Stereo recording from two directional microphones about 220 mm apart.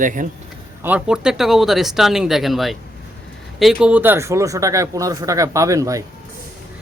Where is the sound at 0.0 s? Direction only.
35° right (ahead or behind).